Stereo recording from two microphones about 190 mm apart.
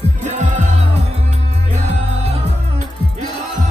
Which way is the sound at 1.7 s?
35° right (ahead or behind).